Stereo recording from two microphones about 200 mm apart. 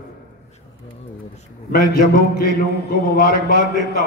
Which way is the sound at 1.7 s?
50° left (ahead or behind).